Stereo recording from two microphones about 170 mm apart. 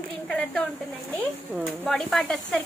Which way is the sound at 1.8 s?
5° left (ahead or behind).